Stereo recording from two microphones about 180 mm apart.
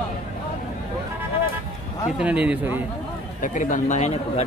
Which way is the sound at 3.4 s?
45° left (ahead or behind).